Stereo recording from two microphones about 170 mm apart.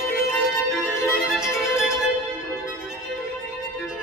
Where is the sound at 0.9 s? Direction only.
15° left (ahead or behind).